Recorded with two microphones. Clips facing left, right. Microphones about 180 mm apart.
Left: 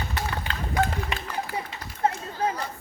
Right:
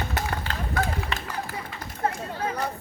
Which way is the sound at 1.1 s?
15° left (ahead or behind).